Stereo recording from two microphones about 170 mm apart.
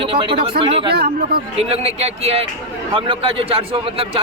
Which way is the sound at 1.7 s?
35° right (ahead or behind).